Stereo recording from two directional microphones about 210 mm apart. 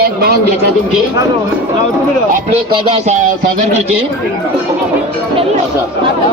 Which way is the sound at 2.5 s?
30° right (ahead or behind).